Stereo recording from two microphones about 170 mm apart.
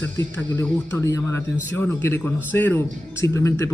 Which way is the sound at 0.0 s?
10° left (ahead or behind).